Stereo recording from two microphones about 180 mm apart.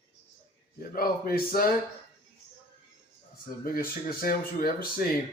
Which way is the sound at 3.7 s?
55° left (ahead or behind).